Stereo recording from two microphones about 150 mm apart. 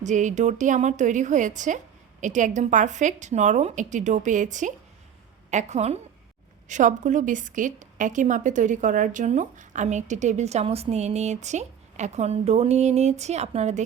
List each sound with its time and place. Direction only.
0.0 s a woman's voice: 55° right (ahead or behind)